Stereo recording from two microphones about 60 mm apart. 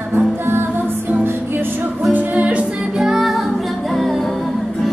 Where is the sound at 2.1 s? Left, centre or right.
Right.